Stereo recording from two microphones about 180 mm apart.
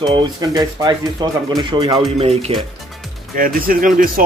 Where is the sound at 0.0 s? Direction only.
25° right (ahead or behind).